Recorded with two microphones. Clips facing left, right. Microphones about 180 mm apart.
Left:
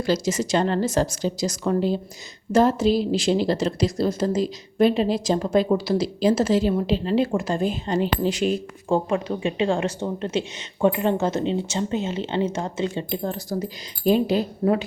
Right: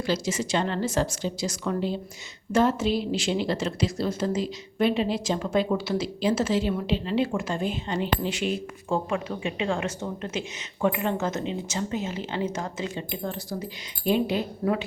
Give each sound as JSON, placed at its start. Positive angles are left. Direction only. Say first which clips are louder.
{"t": 0.0, "sound": "a woman's voice", "louder": "left 4 dB", "side_deg": 40}